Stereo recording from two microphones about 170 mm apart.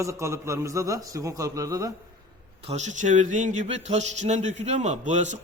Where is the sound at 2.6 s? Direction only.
40° right (ahead or behind).